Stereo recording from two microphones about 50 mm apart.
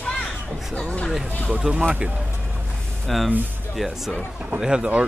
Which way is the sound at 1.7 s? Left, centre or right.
Right.